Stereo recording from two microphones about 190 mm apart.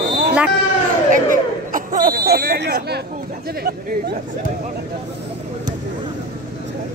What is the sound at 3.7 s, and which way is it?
Speech, 55° right (ahead or behind).